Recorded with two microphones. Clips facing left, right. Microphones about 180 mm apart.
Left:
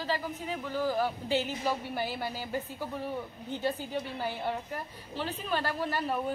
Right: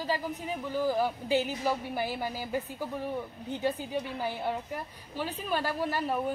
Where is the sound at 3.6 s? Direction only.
10° right (ahead or behind).